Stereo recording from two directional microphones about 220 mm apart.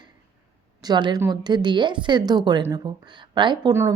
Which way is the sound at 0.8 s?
20° right (ahead or behind).